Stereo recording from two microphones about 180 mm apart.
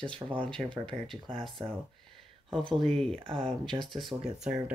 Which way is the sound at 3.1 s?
30° right (ahead or behind).